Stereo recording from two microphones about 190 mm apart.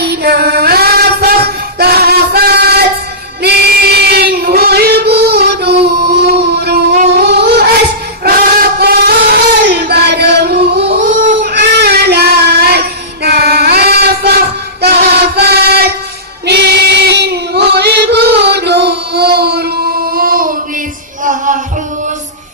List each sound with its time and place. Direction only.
0.0 s female singing: 60° right (ahead or behind)
3.4 s child singing: 55° right (ahead or behind)
7.0 s wind instrument: 55° right (ahead or behind)
8.2 s child singing: 55° right (ahead or behind)
13.2 s female singing: 55° right (ahead or behind)
14.8 s train: 60° right (ahead or behind)
16.5 s child singing: 60° right (ahead or behind)
21.2 s music: 40° right (ahead or behind)